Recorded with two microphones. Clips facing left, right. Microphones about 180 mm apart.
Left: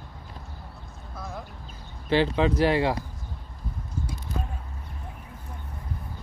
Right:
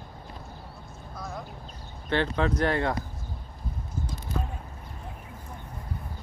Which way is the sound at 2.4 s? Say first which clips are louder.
Left 4 dB; 5° left (ahead or behind).